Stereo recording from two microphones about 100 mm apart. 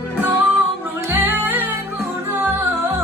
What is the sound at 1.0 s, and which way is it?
Music, 20° right (ahead or behind).